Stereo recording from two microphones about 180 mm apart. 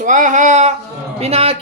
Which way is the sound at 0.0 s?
45° right (ahead or behind).